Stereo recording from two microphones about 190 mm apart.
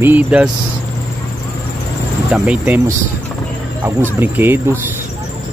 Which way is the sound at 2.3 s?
5° right (ahead or behind).